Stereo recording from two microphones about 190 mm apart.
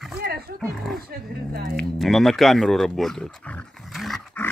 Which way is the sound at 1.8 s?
Centre (ahead or behind).